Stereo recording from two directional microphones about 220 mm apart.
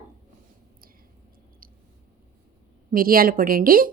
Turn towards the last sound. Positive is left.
turn(degrees=-40)  # may be behind; listen again after turning